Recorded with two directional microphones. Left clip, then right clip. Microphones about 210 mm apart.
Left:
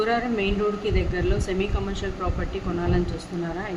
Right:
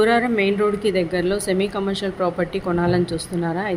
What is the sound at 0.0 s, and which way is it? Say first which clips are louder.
Speech: right 6 dB; 30° right (ahead or behind).